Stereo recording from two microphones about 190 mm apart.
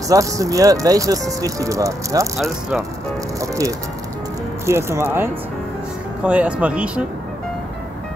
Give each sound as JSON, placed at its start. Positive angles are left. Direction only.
{"t": 0.1, "sound": "speech", "side_deg": -15}
{"t": 2.3, "sound": "speech", "side_deg": 0}
{"t": 3.3, "sound": "speech", "side_deg": -15}